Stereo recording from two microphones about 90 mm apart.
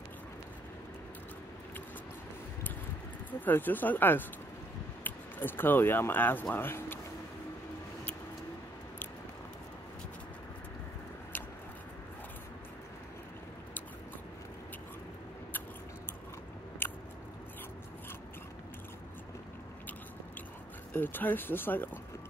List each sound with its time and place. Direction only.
3.3 s speech: 20° left (ahead or behind)
16.8 s chewing: 25° left (ahead or behind)
20.9 s speech: 20° left (ahead or behind)